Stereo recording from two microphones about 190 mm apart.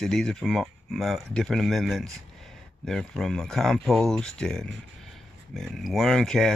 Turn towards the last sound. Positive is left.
turn(degrees=5)  # may be behind; listen again after turning